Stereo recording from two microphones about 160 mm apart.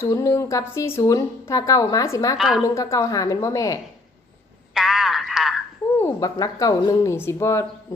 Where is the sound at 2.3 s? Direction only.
Centre (ahead or behind).